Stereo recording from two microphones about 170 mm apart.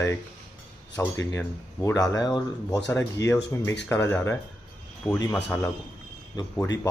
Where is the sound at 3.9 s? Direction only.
15° left (ahead or behind).